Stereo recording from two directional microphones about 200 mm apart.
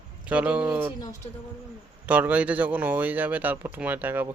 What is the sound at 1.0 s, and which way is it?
Speech, 15° left (ahead or behind).